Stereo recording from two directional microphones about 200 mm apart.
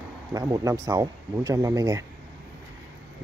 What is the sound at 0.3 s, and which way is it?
Speech, 15° right (ahead or behind).